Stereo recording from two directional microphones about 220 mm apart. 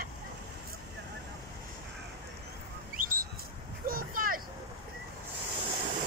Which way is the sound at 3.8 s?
40° right (ahead or behind).